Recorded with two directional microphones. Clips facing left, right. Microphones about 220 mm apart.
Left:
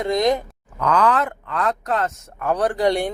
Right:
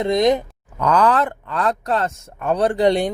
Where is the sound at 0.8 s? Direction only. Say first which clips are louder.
Right 2 dB; 35° right (ahead or behind).